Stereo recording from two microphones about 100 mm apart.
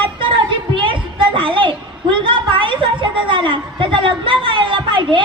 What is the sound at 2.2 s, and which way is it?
A woman's voice, 55° right (ahead or behind).